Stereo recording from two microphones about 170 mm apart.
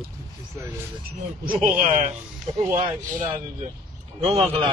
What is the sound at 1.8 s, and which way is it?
Speech, 45° right (ahead or behind).